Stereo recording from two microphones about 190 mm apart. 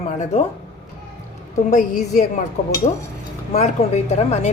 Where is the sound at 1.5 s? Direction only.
40° left (ahead or behind).